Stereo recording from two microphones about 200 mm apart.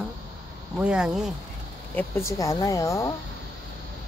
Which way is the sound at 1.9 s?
15° left (ahead or behind).